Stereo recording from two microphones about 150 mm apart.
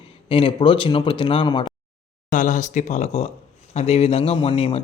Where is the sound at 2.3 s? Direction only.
55° left (ahead or behind).